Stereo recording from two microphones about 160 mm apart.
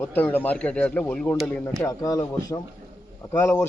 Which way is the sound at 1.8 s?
20° left (ahead or behind).